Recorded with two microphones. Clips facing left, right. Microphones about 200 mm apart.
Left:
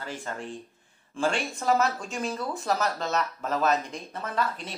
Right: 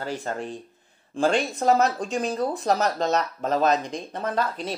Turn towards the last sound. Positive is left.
turn(degrees=-35)  # may be behind; listen again after turning